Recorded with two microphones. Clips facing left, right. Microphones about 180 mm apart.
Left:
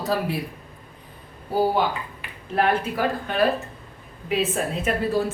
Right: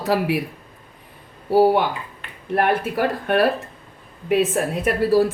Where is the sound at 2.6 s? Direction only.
65° right (ahead or behind).